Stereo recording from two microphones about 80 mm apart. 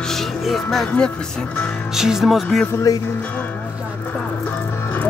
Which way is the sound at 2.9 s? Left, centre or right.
Left.